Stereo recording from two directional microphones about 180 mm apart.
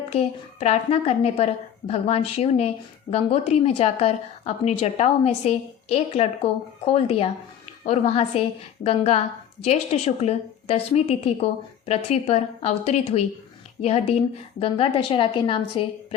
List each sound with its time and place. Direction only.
0.1 s speech: 40° left (ahead or behind)